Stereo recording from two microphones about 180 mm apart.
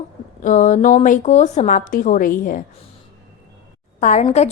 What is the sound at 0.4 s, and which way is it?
A woman's voice, 45° left (ahead or behind).